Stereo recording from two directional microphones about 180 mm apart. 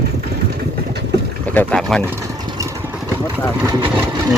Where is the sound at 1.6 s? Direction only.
5° left (ahead or behind).